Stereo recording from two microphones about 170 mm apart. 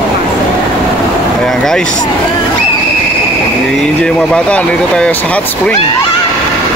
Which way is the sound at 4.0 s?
5° left (ahead or behind).